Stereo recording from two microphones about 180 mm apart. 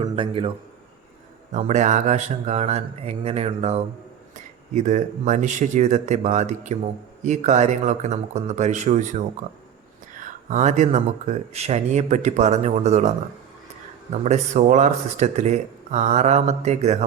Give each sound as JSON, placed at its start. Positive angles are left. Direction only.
{"t": 0.0, "sound": "a man's voice", "side_deg": -30}
{"t": 1.5, "sound": "speech", "side_deg": -40}
{"t": 10.2, "sound": "speech", "side_deg": -45}